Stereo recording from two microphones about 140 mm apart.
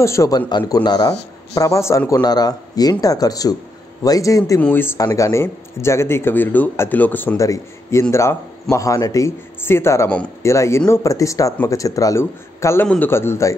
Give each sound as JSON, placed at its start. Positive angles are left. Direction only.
{"t": 0.0, "sound": "speech", "side_deg": 20}
{"t": 12.8, "sound": "a man's voice", "side_deg": 5}
{"t": 13.1, "sound": "a man's voice", "side_deg": 20}